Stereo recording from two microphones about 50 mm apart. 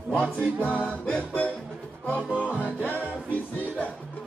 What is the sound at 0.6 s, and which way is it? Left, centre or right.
Music, left.